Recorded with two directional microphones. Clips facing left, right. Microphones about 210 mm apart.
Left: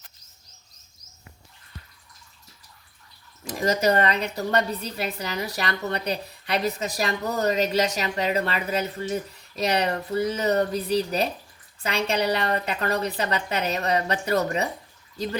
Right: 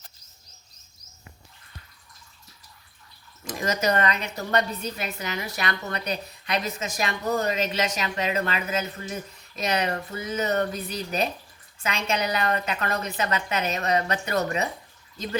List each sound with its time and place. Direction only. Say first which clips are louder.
3.6 s a woman's voice: left 3 dB; 35° left (ahead or behind)